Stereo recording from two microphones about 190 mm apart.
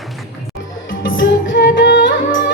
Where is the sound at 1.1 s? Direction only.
55° left (ahead or behind).